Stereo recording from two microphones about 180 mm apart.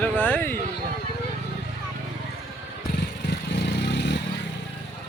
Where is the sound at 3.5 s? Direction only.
70° left (ahead or behind).